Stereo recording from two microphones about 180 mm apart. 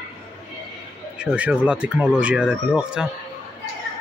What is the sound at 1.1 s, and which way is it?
Speech, 5° right (ahead or behind).